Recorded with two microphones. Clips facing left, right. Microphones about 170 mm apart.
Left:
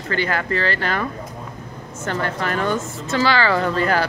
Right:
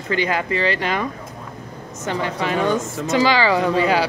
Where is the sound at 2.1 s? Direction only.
5° right (ahead or behind).